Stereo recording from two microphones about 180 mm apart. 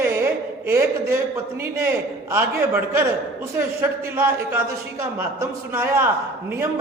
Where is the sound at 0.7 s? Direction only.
15° right (ahead or behind).